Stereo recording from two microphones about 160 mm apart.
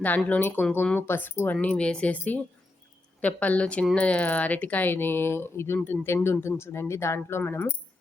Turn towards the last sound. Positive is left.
turn(degrees=10)  # may be behind; listen again after turning